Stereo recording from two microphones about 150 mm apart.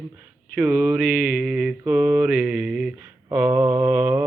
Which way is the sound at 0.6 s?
10° right (ahead or behind).